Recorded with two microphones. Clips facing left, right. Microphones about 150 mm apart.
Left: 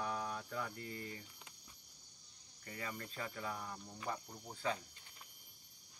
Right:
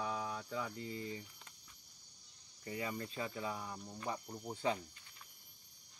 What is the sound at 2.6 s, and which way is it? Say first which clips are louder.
Cricket: right 5 dB; 20° right (ahead or behind).